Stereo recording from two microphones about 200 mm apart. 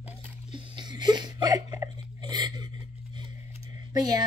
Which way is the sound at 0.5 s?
20° right (ahead or behind).